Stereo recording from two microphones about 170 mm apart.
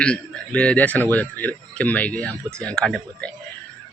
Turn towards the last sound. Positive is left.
turn(degrees=5)  # may be behind; listen again after turning